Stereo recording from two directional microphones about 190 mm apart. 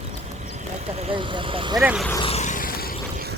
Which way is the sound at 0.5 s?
30° right (ahead or behind).